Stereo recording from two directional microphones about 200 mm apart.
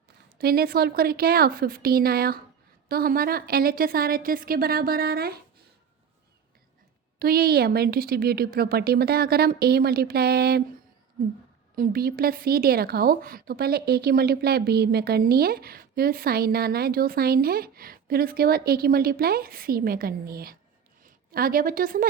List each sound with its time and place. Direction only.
0.3 s a woman's voice: 50° right (ahead or behind)
7.2 s a woman's voice: 50° right (ahead or behind)
11.8 s a woman's voice: 50° right (ahead or behind)